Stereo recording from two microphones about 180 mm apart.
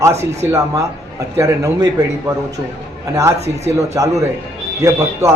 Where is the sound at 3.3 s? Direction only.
35° right (ahead or behind).